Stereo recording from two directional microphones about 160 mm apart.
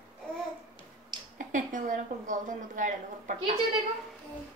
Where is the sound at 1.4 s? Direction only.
55° right (ahead or behind).